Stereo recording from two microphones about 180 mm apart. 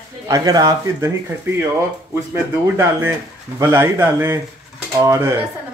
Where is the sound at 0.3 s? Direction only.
20° right (ahead or behind).